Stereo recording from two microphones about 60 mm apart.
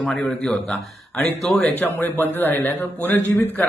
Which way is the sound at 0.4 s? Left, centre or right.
Centre.